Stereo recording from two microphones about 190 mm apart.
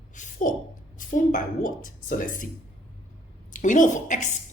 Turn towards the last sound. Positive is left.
turn(degrees=40)  # may be behind; listen again after turning